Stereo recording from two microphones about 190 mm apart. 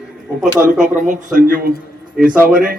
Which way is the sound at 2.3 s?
10° right (ahead or behind).